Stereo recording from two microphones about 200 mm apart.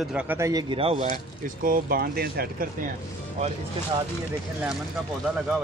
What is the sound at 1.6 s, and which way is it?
Speech, 45° right (ahead or behind).